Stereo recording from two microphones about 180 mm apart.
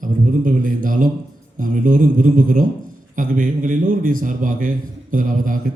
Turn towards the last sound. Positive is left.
turn(degrees=-50)  # may be behind; listen again after turning